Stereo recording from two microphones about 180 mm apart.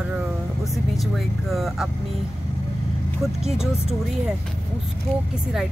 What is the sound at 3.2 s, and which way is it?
Speech, centre (ahead or behind).